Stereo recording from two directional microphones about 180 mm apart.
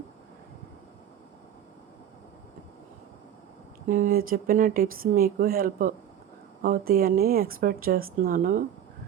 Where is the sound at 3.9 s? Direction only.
50° right (ahead or behind).